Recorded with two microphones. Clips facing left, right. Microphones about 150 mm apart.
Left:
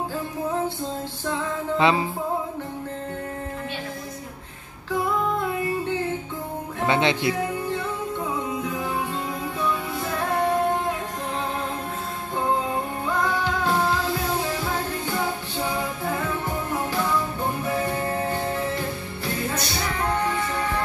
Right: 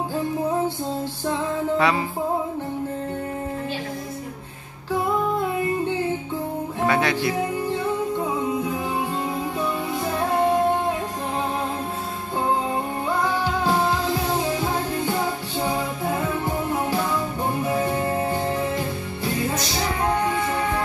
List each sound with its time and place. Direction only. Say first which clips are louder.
1.8 s speech: left 3 dB; 25° left (ahead or behind)
6.9 s speech: left 1 dB; 25° left (ahead or behind)
17.6 s music: right 3 dB; 20° right (ahead or behind)